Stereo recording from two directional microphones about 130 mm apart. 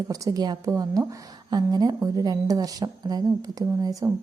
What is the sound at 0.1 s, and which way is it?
A woman's voice, 25° right (ahead or behind).